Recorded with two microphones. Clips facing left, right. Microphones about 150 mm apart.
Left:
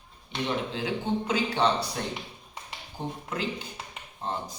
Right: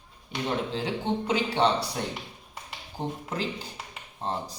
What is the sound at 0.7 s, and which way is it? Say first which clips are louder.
Speech: even; 30° right (ahead or behind).